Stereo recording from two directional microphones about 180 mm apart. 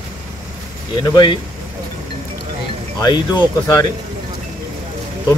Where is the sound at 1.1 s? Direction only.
25° left (ahead or behind).